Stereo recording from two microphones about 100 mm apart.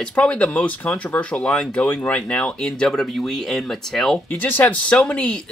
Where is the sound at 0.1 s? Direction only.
10° left (ahead or behind).